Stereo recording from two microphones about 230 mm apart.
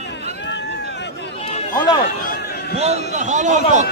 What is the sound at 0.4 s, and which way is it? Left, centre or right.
Run, left.